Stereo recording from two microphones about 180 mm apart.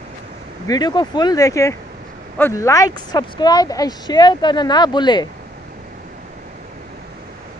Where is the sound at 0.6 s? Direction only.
25° left (ahead or behind).